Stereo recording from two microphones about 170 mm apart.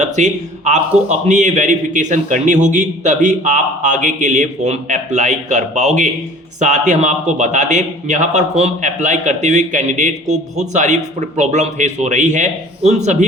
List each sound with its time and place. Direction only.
0.0 s a man's voice: 45° right (ahead or behind)